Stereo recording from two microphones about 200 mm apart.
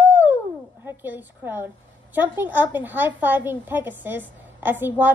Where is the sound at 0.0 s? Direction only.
10° right (ahead or behind).